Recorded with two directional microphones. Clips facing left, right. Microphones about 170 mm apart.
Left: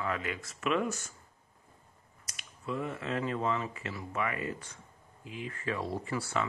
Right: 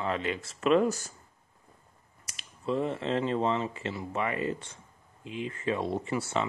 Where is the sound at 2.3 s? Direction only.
30° right (ahead or behind).